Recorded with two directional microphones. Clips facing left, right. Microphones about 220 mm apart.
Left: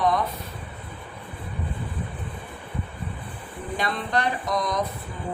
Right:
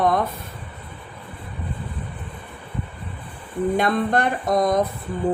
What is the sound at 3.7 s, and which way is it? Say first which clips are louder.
Speech: right 5 dB; 50° right (ahead or behind).